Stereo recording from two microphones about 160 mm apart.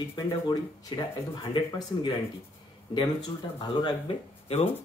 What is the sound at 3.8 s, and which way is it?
Speech, 35° left (ahead or behind).